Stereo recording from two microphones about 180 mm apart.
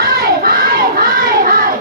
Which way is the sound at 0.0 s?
55° right (ahead or behind).